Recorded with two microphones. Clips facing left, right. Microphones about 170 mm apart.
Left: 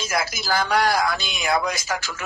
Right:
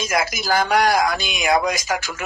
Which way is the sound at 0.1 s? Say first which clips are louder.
Right 3 dB; 50° right (ahead or behind).